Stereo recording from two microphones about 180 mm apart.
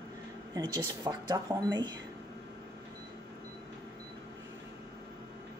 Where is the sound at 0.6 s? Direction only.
20° right (ahead or behind).